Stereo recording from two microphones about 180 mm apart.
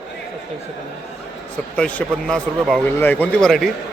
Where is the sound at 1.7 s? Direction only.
5° left (ahead or behind).